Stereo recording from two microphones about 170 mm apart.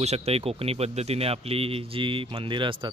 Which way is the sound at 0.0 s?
40° right (ahead or behind).